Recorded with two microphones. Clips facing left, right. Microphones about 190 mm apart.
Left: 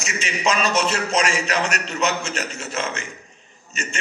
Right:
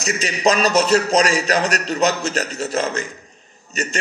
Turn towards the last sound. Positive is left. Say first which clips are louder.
# right 6 dB
turn(degrees=-35)  # may be behind; listen again after turning